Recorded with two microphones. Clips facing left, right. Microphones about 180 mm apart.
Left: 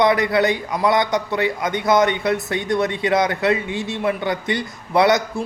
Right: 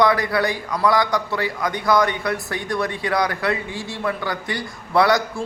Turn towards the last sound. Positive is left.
turn(degrees=20)  # may be behind; listen again after turning